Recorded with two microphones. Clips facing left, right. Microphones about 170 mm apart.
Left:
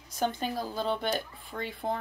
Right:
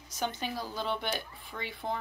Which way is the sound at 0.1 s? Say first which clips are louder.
Left 4 dB; 50° left (ahead or behind).